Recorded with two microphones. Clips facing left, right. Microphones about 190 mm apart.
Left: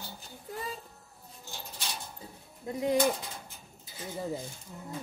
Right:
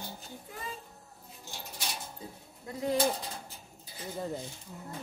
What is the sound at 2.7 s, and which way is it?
Speech, 20° left (ahead or behind).